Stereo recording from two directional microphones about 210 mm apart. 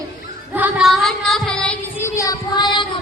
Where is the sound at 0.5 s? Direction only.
5° right (ahead or behind); by 2.7 s 15° left (ahead or behind).